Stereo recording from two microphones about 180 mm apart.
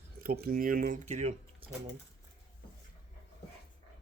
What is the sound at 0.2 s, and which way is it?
Speech, 55° right (ahead or behind).